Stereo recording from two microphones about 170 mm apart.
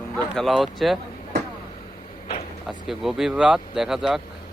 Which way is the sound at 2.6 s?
5° right (ahead or behind).